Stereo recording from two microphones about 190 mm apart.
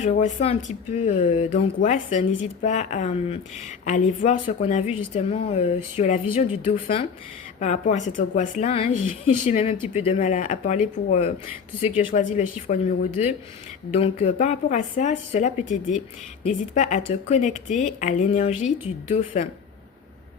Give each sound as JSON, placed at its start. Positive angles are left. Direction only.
{"t": 0.0, "sound": "a woman's voice", "side_deg": 40}